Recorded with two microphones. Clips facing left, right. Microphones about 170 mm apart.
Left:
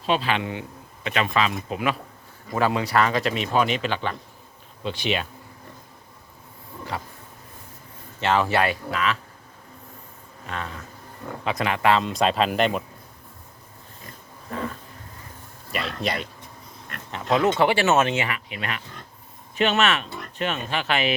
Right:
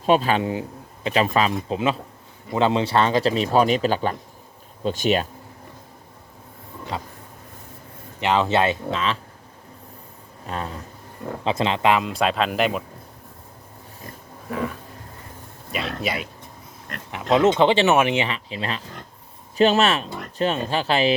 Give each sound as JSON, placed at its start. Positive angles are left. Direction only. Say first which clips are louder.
{"t": 0.0, "sound": "speech", "louder": "right 5 dB", "side_deg": -45}
{"t": 6.9, "sound": "speech", "louder": "right 2 dB", "side_deg": -20}
{"t": 8.2, "sound": "speech", "louder": "right 2 dB", "side_deg": -20}
{"t": 10.4, "sound": "speech", "louder": "right 3 dB", "side_deg": -35}
{"t": 11.4, "sound": "speech", "louder": "right 2 dB", "side_deg": -25}
{"t": 12.0, "sound": "speech", "louder": "even", "side_deg": 0}
{"t": 14.5, "sound": "a sound", "louder": "right 3 dB", "side_deg": -10}
{"t": 16.0, "sound": "speech", "louder": "left 1 dB", "side_deg": -5}
{"t": 17.1, "sound": "speech", "louder": "right 4 dB", "side_deg": -15}